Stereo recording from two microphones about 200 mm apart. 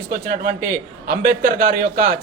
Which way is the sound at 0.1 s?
45° right (ahead or behind).